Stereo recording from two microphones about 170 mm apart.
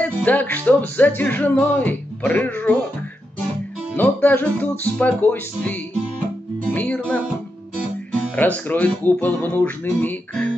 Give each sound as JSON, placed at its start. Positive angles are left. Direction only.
{"t": 0.0, "sound": "music", "side_deg": 10}
{"t": 3.9, "sound": "music", "side_deg": 10}